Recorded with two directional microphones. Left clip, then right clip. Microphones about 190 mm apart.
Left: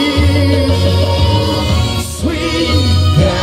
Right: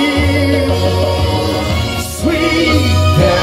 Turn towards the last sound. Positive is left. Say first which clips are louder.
# right 3 dB
turn(degrees=35)  # may be behind; listen again after turning